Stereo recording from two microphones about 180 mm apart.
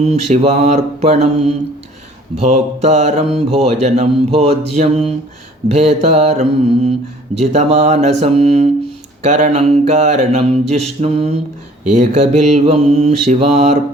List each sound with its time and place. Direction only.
0.0 s mantra: 35° right (ahead or behind)